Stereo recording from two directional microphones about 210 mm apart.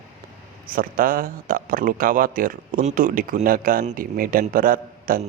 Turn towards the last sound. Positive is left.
turn(degrees=-40)  # may be behind; listen again after turning